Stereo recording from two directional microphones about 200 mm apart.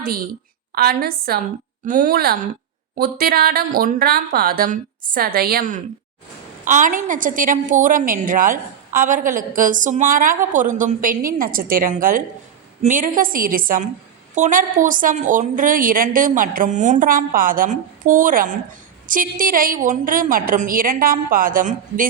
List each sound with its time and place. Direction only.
0.8 s a woman's voice: 50° right (ahead or behind)